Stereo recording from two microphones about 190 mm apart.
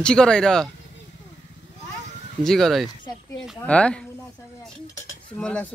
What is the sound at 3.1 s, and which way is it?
Speech, 20° left (ahead or behind).